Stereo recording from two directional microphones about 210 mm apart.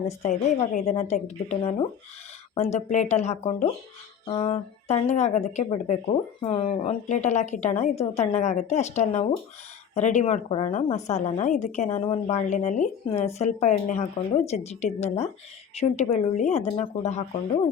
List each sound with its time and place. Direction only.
0.2 s a woman's voice: 35° left (ahead or behind)